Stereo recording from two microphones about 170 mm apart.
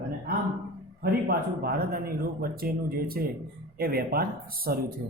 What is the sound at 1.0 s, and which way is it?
Speech, 65° right (ahead or behind).